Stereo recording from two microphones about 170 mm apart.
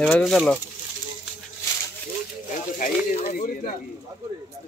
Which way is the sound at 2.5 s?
50° left (ahead or behind).